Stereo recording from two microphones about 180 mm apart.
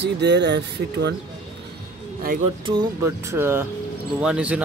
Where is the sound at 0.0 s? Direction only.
70° right (ahead or behind).